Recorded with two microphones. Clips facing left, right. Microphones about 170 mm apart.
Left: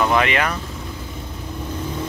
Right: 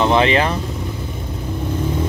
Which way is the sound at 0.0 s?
30° right (ahead or behind).